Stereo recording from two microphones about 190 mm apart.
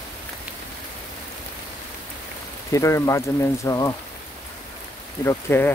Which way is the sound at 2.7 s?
15° left (ahead or behind).